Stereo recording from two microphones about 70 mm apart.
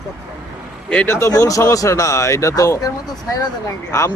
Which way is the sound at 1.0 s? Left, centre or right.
Left.